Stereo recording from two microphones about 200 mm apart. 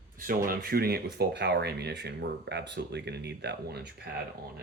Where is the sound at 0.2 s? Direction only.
45° right (ahead or behind).